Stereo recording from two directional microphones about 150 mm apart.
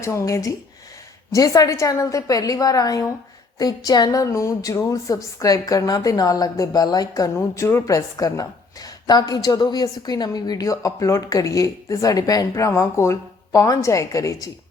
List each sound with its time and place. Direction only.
0.0 s a woman's voice: 20° left (ahead or behind)